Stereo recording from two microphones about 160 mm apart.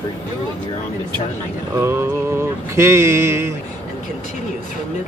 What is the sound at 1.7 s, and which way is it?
Mantra, 15° right (ahead or behind).